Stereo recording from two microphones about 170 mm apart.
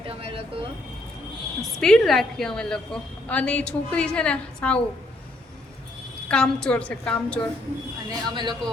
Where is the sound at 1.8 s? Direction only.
Centre (ahead or behind).